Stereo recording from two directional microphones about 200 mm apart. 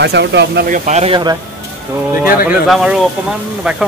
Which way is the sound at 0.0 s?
60° right (ahead or behind).